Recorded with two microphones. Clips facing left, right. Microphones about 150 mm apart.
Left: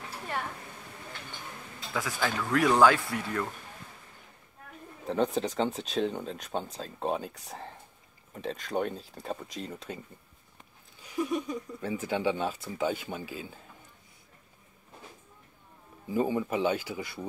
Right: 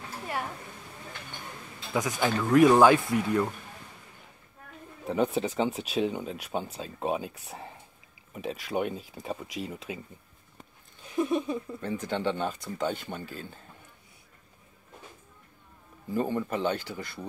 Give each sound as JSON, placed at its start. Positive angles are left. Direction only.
{"t": 2.0, "sound": "speech", "side_deg": -20}
{"t": 5.0, "sound": "speech", "side_deg": -5}
{"t": 11.2, "sound": "speech", "side_deg": -25}
{"t": 11.8, "sound": "speech", "side_deg": 5}
{"t": 16.1, "sound": "speech", "side_deg": 10}